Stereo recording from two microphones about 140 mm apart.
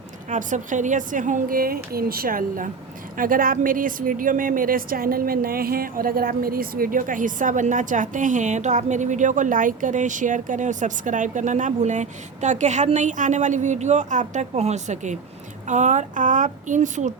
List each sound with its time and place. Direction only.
0.3 s a woman's voice: 65° right (ahead or behind)